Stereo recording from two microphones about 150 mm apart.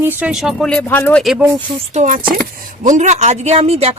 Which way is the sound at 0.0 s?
5° right (ahead or behind).